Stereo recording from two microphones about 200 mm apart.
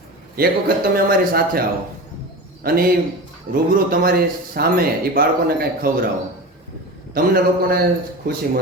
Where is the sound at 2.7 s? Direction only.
45° right (ahead or behind).